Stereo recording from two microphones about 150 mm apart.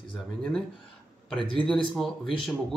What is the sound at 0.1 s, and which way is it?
Speech, 5° left (ahead or behind).